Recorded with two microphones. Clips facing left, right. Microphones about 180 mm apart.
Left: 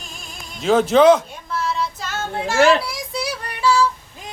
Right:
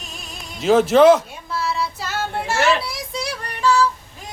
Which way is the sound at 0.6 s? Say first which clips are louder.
Right 1 dB; 5° right (ahead or behind).